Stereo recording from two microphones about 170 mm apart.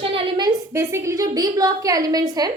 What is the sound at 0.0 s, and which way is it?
A woman's voice, 25° right (ahead or behind).